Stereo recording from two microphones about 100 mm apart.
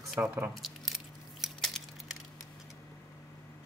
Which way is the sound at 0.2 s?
20° right (ahead or behind).